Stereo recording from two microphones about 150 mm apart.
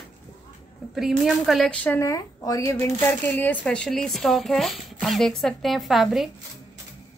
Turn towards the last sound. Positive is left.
turn(degrees=0)  # may be behind; listen again after turning